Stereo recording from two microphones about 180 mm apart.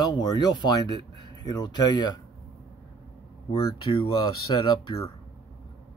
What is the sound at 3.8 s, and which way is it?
Speech, 30° left (ahead or behind).